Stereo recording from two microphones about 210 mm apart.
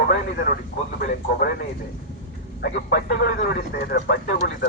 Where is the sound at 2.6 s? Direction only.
55° left (ahead or behind).